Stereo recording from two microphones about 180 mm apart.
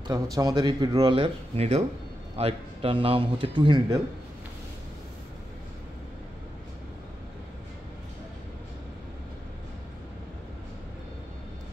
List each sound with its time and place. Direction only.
0.0 s speech: 20° right (ahead or behind)